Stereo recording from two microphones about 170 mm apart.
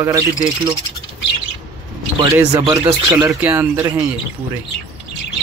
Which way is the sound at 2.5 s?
30° right (ahead or behind).